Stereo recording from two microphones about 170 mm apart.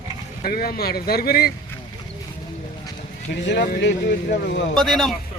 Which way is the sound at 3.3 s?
90° left.